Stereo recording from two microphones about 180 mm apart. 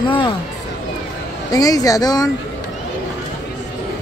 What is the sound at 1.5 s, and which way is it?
Speech, 20° left (ahead or behind).